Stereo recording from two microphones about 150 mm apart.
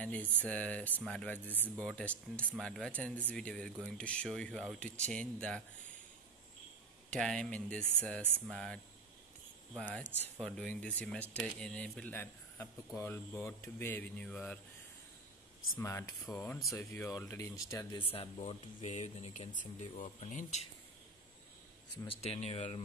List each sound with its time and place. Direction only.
0.0 s speech: 10° left (ahead or behind)
7.1 s speech: 5° left (ahead or behind)
15.8 s speech: 20° left (ahead or behind)
17.9 s speech: 40° left (ahead or behind)
19.6 s speech: 60° left (ahead or behind)
22.0 s speech: 40° left (ahead or behind)